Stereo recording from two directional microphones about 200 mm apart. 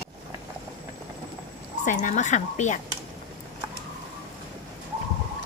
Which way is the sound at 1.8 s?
40° left (ahead or behind).